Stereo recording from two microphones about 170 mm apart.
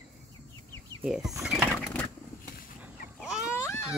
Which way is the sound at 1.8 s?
10° left (ahead or behind).